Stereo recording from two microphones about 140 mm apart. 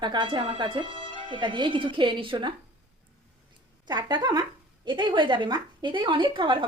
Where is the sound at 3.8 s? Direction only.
30° right (ahead or behind).